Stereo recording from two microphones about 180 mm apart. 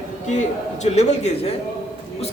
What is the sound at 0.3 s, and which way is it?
A woman's voice, 40° left (ahead or behind).